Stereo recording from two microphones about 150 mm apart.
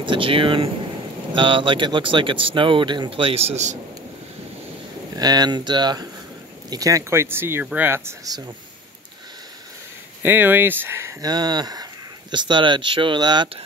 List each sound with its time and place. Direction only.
0.0 s speech: 35° right (ahead or behind)
5.1 s speech: 25° right (ahead or behind)
10.2 s speech: 15° right (ahead or behind); by 13.5 s 30° right (ahead or behind)